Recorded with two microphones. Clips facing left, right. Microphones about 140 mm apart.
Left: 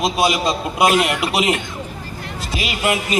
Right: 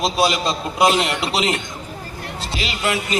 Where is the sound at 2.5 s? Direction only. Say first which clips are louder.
Left 3 dB; 30° right (ahead or behind).